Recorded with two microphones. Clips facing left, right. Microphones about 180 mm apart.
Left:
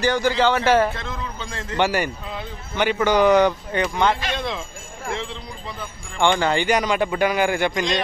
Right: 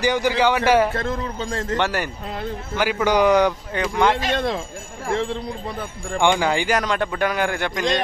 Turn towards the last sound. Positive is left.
turn(degrees=5)  # may be behind; listen again after turning